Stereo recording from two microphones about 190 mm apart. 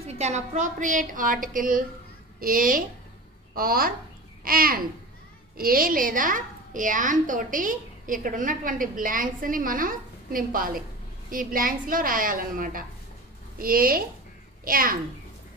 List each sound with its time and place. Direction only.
0.0 s a woman's voice: 35° right (ahead or behind)